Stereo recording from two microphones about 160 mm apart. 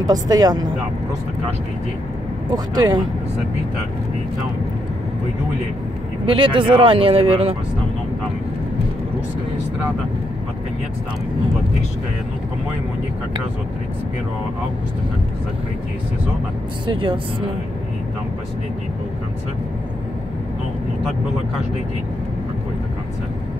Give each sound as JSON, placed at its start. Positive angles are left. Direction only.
{"t": 0.0, "sound": "speech", "side_deg": -25}
{"t": 2.5, "sound": "speech", "side_deg": -25}
{"t": 6.2, "sound": "speech", "side_deg": -30}
{"t": 16.8, "sound": "speech", "side_deg": -30}